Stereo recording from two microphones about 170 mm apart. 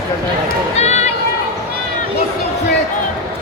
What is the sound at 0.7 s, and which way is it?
Run, 40° left (ahead or behind).